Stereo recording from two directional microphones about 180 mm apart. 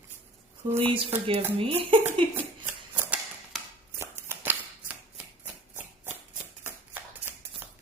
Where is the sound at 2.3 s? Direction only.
10° right (ahead or behind).